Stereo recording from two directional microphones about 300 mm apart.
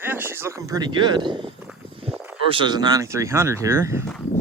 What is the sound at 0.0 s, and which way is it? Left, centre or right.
Speech, centre.